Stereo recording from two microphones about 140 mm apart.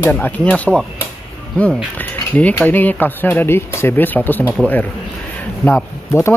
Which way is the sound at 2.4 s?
10° left (ahead or behind).